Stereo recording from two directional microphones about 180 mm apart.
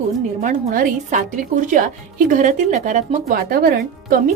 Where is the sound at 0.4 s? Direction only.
45° right (ahead or behind).